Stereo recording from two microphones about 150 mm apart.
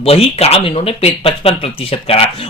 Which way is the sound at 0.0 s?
40° left (ahead or behind).